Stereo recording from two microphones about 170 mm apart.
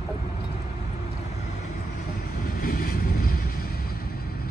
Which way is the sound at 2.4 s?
60° left (ahead or behind).